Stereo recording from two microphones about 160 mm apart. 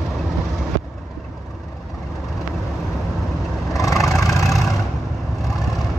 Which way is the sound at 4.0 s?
Centre (ahead or behind).